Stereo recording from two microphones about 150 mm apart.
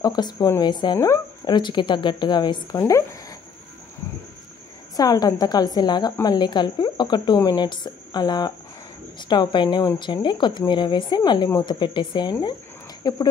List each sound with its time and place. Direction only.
0.0 s speech: 25° left (ahead or behind)
2.8 s a sound: 20° left (ahead or behind)
4.9 s speech: 25° left (ahead or behind)